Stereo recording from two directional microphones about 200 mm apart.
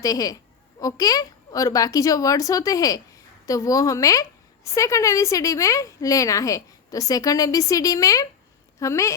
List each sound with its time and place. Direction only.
0.0 s a woman's voice: 15° left (ahead or behind)